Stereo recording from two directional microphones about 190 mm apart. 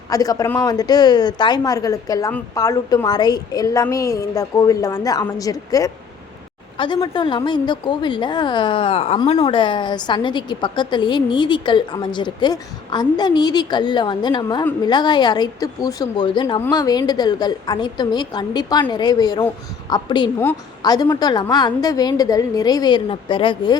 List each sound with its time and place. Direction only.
0.1 s a woman's voice: 20° left (ahead or behind)